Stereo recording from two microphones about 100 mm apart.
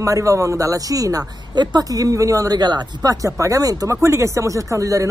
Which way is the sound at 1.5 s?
45° right (ahead or behind).